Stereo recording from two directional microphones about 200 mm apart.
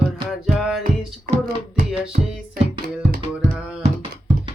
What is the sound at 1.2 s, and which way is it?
Music, 35° right (ahead or behind).